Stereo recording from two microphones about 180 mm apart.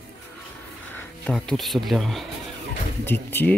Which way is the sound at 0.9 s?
10° left (ahead or behind).